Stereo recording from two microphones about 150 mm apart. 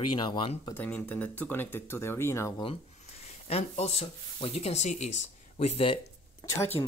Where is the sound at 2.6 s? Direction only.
40° left (ahead or behind).